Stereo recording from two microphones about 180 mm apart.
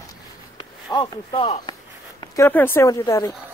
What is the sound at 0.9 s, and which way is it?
Speech, 25° left (ahead or behind).